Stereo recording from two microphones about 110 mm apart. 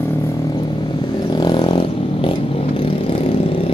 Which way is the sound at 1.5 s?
45° left (ahead or behind).